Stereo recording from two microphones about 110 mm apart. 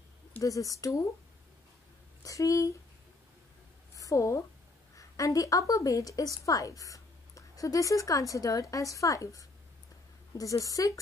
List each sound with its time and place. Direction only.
0.4 s speech: 30° left (ahead or behind)
2.2 s speech: 30° left (ahead or behind)
3.9 s a sound: 30° left (ahead or behind)
4.9 s a woman's voice: 30° left (ahead or behind)